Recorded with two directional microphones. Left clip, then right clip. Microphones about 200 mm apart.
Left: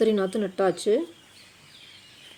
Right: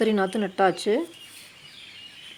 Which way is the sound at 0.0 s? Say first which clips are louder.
Even; 10° right (ahead or behind).